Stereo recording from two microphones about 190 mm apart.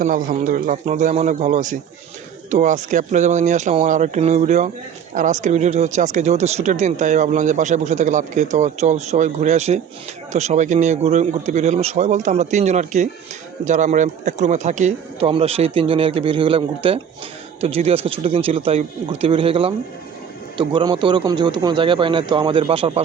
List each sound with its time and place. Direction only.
0.0 s speech: 45° right (ahead or behind); by 23.0 s 30° right (ahead or behind)